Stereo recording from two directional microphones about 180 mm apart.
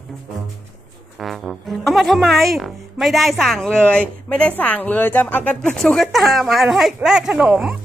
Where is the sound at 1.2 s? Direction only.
Centre (ahead or behind).